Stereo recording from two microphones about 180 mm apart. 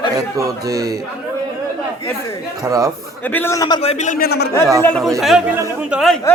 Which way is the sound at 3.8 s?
35° left (ahead or behind).